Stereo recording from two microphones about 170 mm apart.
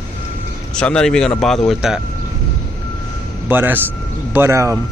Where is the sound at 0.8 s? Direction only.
5° left (ahead or behind).